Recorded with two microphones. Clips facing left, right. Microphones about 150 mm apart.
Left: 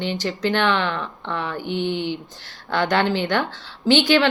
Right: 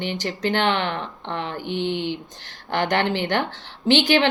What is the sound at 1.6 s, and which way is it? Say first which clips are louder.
Mantra: left 1 dB; 15° left (ahead or behind).